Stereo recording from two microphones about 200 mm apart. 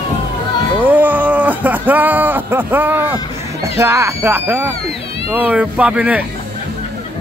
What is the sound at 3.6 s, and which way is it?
Speech, 15° right (ahead or behind).